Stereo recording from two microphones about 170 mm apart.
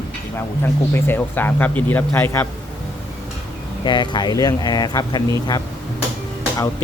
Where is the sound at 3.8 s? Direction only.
25° left (ahead or behind).